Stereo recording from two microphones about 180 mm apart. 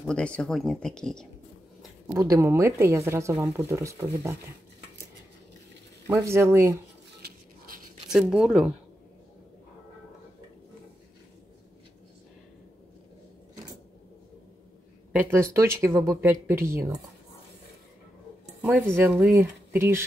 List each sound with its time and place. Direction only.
0.0 s speech: 5° left (ahead or behind)
2.0 s speech: 15° right (ahead or behind)
6.0 s speech: 15° right (ahead or behind)
7.2 s a sound: 60° right (ahead or behind)
8.1 s speech: 5° right (ahead or behind)
15.1 s speech: 15° right (ahead or behind)
18.9 s speech: 10° right (ahead or behind)